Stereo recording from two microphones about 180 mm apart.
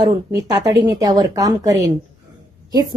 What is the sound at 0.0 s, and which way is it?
A woman's voice, 20° right (ahead or behind).